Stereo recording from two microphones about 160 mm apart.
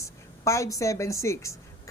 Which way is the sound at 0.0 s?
20° left (ahead or behind).